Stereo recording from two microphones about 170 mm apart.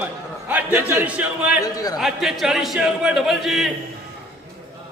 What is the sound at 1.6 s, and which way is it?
Speech, 20° left (ahead or behind).